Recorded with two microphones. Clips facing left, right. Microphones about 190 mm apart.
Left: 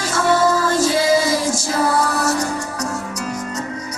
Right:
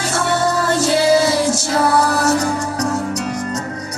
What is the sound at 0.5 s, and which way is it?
Music, 70° right (ahead or behind).